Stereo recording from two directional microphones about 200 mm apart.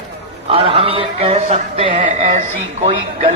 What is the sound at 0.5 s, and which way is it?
Speech, 30° right (ahead or behind).